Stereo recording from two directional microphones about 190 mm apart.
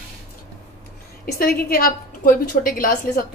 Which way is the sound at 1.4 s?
50° left (ahead or behind).